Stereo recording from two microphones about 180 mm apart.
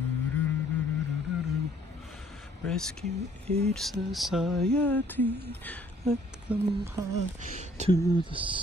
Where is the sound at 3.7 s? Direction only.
Centre (ahead or behind).